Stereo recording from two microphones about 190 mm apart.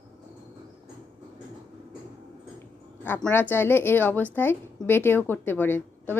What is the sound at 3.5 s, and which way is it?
A woman's voice, 10° left (ahead or behind).